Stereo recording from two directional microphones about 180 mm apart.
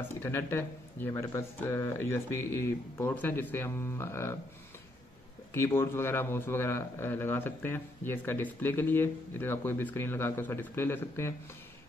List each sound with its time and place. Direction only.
0.2 s a man's voice: 15° left (ahead or behind)
5.5 s a man's voice: 15° left (ahead or behind)